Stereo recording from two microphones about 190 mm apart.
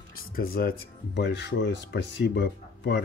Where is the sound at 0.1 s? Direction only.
50° left (ahead or behind).